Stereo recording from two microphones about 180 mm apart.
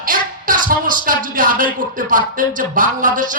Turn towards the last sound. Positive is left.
turn(degrees=-50)  # may be behind; listen again after turning